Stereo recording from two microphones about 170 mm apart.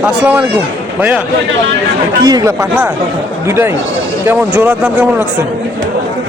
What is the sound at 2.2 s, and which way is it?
Speech, 20° right (ahead or behind).